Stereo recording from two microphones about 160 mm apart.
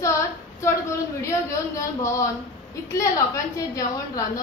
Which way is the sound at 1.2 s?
20° left (ahead or behind).